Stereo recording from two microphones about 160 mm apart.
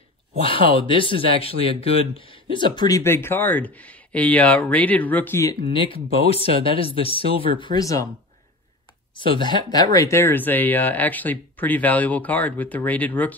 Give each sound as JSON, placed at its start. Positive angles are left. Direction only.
{"t": 0.4, "sound": "speech", "side_deg": 35}
{"t": 3.0, "sound": "speech", "side_deg": 15}
{"t": 5.7, "sound": "speech", "side_deg": 35}
{"t": 7.6, "sound": "speech", "side_deg": 25}
{"t": 9.1, "sound": "speech", "side_deg": 30}
{"t": 9.9, "sound": "speech", "side_deg": 15}